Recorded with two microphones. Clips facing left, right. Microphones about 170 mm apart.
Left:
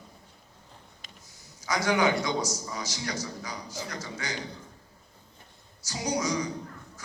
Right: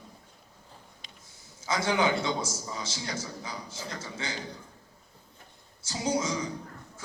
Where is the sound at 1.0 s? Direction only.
45° left (ahead or behind).